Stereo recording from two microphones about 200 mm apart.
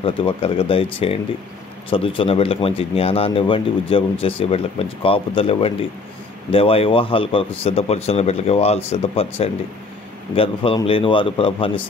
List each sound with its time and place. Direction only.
0.0 s speech: 25° left (ahead or behind)
1.9 s speech: 30° left (ahead or behind)